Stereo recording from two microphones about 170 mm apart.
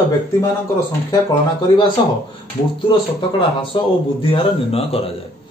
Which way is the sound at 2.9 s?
30° left (ahead or behind).